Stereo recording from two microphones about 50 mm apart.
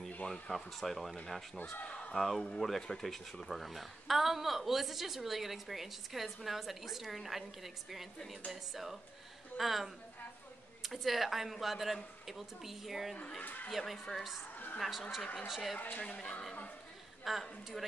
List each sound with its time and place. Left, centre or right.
0.3 s a woman's voice: centre
1.6 s speech: left
1.9 s a sound: centre
2.1 s a woman's voice: centre
13.4 s speech: left
13.7 s a woman's voice: centre
16.0 s speech: left
17.2 s a woman's voice: centre